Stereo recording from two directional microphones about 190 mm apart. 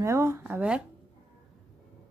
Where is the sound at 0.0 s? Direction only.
15° right (ahead or behind).